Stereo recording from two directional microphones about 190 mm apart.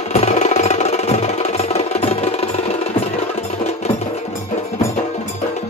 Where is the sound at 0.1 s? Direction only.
35° left (ahead or behind).